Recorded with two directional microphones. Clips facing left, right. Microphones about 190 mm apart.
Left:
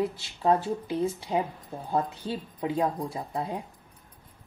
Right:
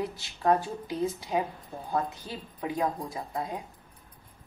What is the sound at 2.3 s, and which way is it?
Speech, 25° left (ahead or behind).